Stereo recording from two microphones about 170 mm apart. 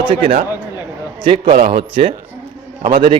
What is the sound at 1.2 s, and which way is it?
Speech, 30° right (ahead or behind).